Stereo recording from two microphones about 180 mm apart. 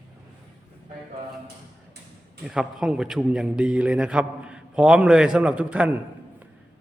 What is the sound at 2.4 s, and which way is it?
A man's voice, 5° right (ahead or behind).